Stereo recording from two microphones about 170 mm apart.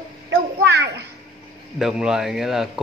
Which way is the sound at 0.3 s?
90° right.